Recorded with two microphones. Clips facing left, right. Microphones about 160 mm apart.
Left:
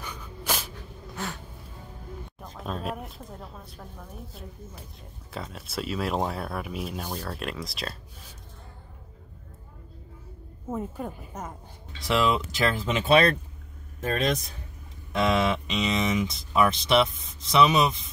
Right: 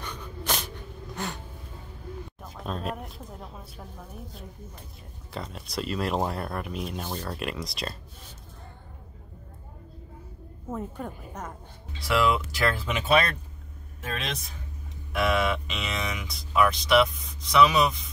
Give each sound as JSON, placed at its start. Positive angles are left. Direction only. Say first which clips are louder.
{"t": 0.0, "sound": "sneeze", "louder": "right 1 dB", "side_deg": 10}
{"t": 1.1, "sound": "a sound", "louder": "right 1 dB", "side_deg": 0}
{"t": 2.4, "sound": "speech", "louder": "even", "side_deg": 0}
{"t": 5.3, "sound": "speech", "louder": "even", "side_deg": 0}
{"t": 10.7, "sound": "speech", "louder": "left 2 dB", "side_deg": 5}
{"t": 12.0, "sound": "speech", "louder": "even", "side_deg": 20}
{"t": 14.0, "sound": "speech", "louder": "left 8 dB", "side_deg": 40}
{"t": 15.1, "sound": "speech", "louder": "left 1 dB", "side_deg": 20}